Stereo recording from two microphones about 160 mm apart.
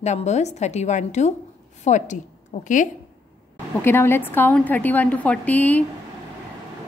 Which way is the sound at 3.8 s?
15° left (ahead or behind).